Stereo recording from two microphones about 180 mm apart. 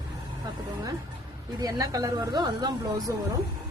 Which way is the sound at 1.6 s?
20° right (ahead or behind).